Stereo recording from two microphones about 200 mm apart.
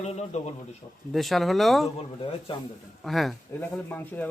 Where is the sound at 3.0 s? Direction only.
Centre (ahead or behind).